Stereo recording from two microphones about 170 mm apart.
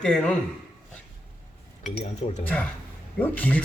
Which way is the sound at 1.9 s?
40° left (ahead or behind).